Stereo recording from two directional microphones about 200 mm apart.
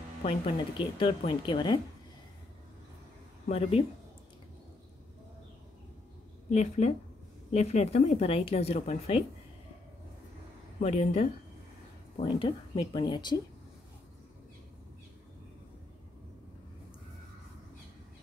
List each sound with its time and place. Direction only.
0.2 s speech: 25° left (ahead or behind)
3.4 s speech: 30° left (ahead or behind)
6.5 s speech: 35° left (ahead or behind)
10.8 s speech: 35° left (ahead or behind)
12.2 s speech: 25° left (ahead or behind)